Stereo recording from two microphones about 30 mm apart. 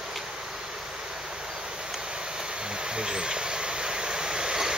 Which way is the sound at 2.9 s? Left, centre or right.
Right.